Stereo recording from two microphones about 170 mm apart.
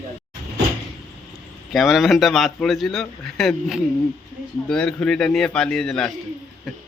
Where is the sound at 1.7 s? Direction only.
Centre (ahead or behind).